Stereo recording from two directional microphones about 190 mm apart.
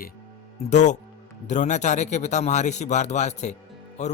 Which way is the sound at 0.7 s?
40° left (ahead or behind).